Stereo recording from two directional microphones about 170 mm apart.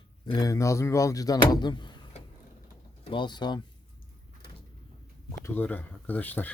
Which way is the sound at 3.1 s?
25° left (ahead or behind).